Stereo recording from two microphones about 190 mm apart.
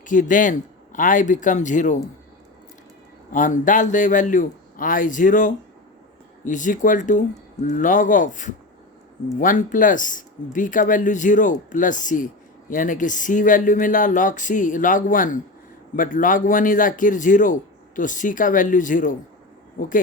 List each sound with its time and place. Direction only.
0.0 s speech: 45° left (ahead or behind)
3.3 s speech: 45° left (ahead or behind)